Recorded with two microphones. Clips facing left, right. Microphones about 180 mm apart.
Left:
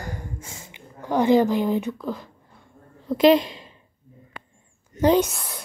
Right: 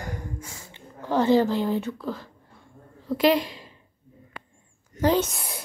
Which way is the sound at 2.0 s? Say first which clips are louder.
Left 2 dB; 15° left (ahead or behind).